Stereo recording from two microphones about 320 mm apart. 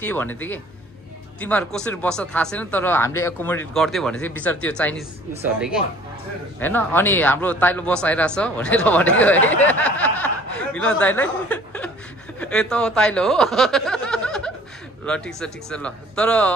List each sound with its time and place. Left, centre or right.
0.0 s speech: centre